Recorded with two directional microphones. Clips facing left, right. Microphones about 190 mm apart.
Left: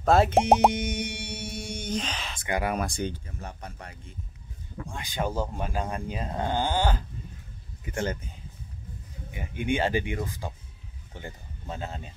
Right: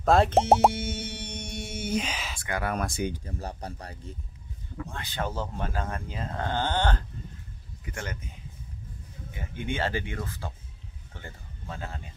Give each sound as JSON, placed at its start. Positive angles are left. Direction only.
{"t": 0.0, "sound": "speech", "side_deg": 5}
{"t": 2.4, "sound": "speech", "side_deg": 15}
{"t": 2.8, "sound": "speech", "side_deg": -5}
{"t": 3.3, "sound": "speech", "side_deg": -35}
{"t": 4.9, "sound": "speech", "side_deg": 15}
{"t": 7.8, "sound": "a man's voice", "side_deg": 30}
{"t": 9.3, "sound": "speech", "side_deg": 15}